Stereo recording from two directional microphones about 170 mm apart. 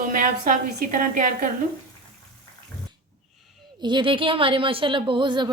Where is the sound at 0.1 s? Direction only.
50° right (ahead or behind).